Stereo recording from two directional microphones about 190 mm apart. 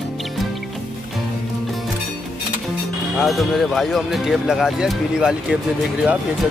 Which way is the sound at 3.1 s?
Centre (ahead or behind).